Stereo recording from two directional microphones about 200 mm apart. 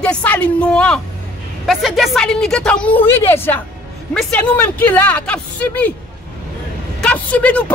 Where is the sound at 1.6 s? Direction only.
Centre (ahead or behind).